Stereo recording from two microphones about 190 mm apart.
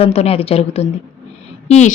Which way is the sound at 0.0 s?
30° left (ahead or behind).